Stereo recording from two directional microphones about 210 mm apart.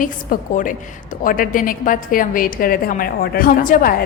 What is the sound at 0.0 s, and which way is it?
A woman's voice, 40° left (ahead or behind).